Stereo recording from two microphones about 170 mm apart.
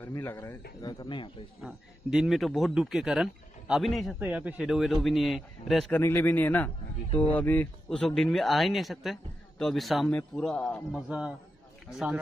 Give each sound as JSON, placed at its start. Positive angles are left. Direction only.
{"t": 0.0, "sound": "speech", "side_deg": 15}
{"t": 0.8, "sound": "speech", "side_deg": 25}
{"t": 1.6, "sound": "speech", "side_deg": -5}
{"t": 4.2, "sound": "speech", "side_deg": -10}
{"t": 5.9, "sound": "speech", "side_deg": 15}